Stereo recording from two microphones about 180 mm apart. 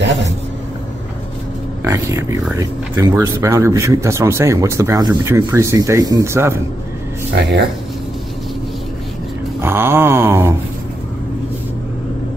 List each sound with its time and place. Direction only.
1.9 s speech: 15° right (ahead or behind)
7.4 s speech: 70° right (ahead or behind)
9.6 s speech: 10° right (ahead or behind)